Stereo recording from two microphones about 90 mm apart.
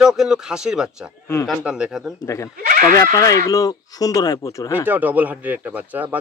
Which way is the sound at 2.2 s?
35° left (ahead or behind).